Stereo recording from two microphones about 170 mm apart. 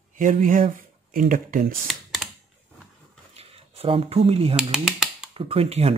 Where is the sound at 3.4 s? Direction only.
35° right (ahead or behind).